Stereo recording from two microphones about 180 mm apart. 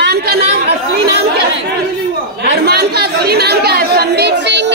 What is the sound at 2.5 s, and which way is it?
Speech, 65° right (ahead or behind).